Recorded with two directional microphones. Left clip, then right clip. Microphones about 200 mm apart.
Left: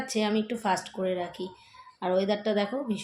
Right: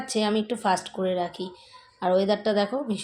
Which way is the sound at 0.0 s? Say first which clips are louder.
Right 3 dB; 20° right (ahead or behind).